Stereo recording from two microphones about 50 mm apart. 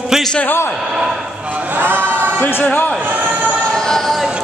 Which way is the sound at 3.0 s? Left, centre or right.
Right.